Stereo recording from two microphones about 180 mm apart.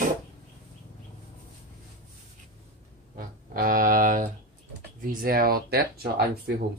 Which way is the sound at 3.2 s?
50° right (ahead or behind).